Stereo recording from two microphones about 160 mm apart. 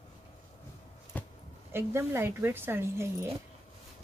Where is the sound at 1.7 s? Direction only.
15° right (ahead or behind).